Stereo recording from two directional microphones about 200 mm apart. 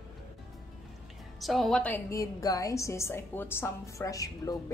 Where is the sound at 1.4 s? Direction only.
Centre (ahead or behind).